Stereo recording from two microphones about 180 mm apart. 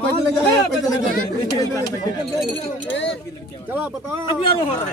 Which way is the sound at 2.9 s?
90° left.